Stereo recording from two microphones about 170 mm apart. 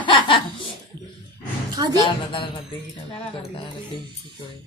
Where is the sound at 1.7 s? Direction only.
25° right (ahead or behind).